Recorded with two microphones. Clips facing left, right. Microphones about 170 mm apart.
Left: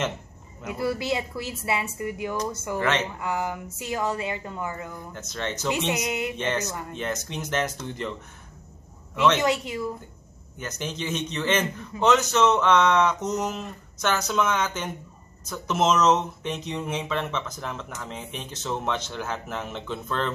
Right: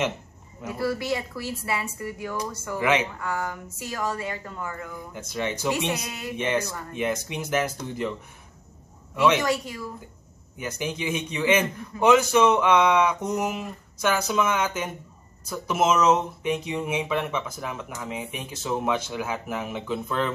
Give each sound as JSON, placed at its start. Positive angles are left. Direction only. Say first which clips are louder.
{"t": 0.7, "sound": "speech", "louder": "even", "side_deg": 20}
{"t": 2.8, "sound": "speech", "louder": "right 3 dB", "side_deg": -10}
{"t": 3.2, "sound": "speech", "louder": "left 2 dB", "side_deg": 20}
{"t": 5.1, "sound": "speech", "louder": "right 4 dB", "side_deg": -10}
{"t": 5.9, "sound": "speech", "louder": "left 3 dB", "side_deg": 20}
{"t": 6.3, "sound": "speech", "louder": "right 2 dB", "side_deg": -10}
{"t": 6.7, "sound": "speech", "louder": "left 2 dB", "side_deg": 20}
{"t": 7.0, "sound": "speech", "louder": "right 5 dB", "side_deg": -10}
{"t": 9.4, "sound": "speech", "louder": "left 2 dB", "side_deg": 20}
{"t": 10.6, "sound": "speech", "louder": "right 2 dB", "side_deg": -10}